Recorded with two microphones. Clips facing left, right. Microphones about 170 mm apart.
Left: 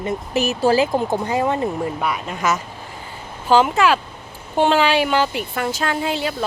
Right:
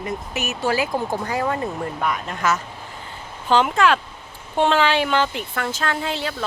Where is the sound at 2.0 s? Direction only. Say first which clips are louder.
Left 1 dB; 10° left (ahead or behind).